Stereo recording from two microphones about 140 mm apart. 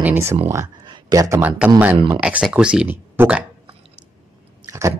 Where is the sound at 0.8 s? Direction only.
30° right (ahead or behind).